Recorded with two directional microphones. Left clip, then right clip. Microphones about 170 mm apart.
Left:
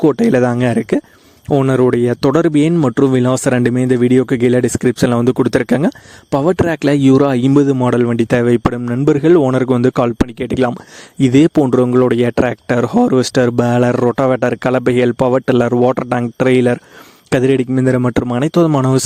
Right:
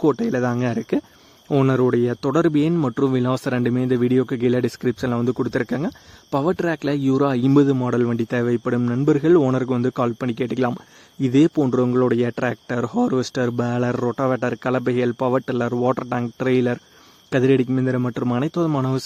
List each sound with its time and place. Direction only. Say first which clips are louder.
0.0 s speech: left 7 dB; 45° left (ahead or behind)
0.3 s speech: left 9 dB; 55° left (ahead or behind)